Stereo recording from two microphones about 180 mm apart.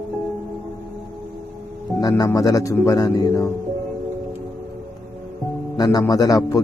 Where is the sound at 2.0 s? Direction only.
20° left (ahead or behind).